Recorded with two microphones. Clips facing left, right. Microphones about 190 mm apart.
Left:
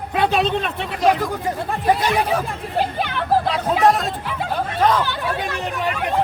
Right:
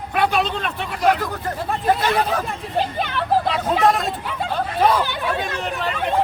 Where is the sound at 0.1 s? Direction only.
25° left (ahead or behind).